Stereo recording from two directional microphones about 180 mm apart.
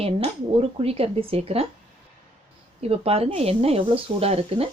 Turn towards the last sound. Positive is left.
turn(degrees=-35)  # may be behind; listen again after turning